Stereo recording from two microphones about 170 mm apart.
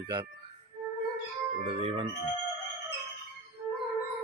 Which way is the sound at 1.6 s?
35° right (ahead or behind).